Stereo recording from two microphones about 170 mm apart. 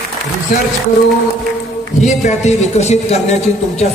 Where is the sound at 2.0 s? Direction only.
40° left (ahead or behind).